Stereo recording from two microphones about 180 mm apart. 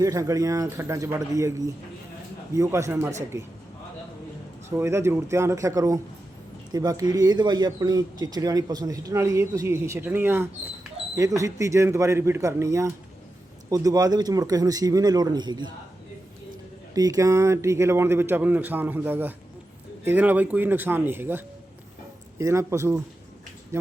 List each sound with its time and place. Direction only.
0.0 s a man's voice: 20° right (ahead or behind)
4.8 s a man's voice: 15° right (ahead or behind)
16.9 s a man's voice: 20° right (ahead or behind)